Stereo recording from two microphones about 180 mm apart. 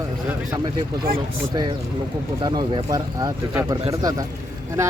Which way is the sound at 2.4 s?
25° right (ahead or behind).